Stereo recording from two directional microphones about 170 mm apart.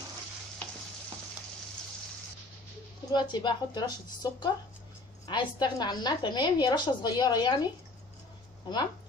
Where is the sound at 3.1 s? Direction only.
25° left (ahead or behind).